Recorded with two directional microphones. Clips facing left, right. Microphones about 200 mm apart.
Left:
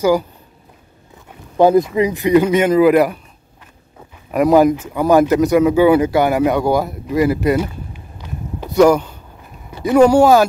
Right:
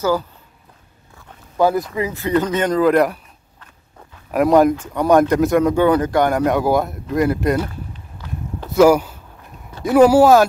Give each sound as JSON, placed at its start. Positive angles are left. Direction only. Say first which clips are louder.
{"t": 1.6, "sound": "speech", "louder": "left 6 dB", "side_deg": 20}
{"t": 4.3, "sound": "speech", "louder": "left 2 dB", "side_deg": 0}
{"t": 8.6, "sound": "speech", "louder": "left 1 dB", "side_deg": -5}